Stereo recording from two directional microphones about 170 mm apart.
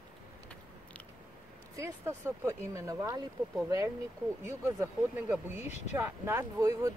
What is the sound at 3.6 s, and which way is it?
Speech, 20° right (ahead or behind).